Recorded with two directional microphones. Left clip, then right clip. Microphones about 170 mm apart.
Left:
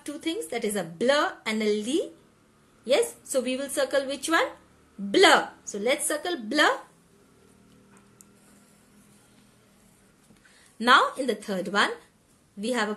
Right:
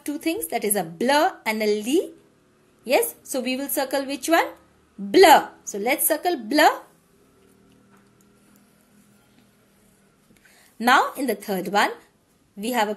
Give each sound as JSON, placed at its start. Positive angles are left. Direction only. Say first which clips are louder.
{"t": 0.0, "sound": "speech", "louder": "right 5 dB", "side_deg": -35}
{"t": 10.8, "sound": "speech", "louder": "right 1 dB", "side_deg": -30}